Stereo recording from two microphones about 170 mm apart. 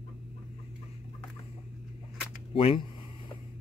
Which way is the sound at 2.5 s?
30° left (ahead or behind).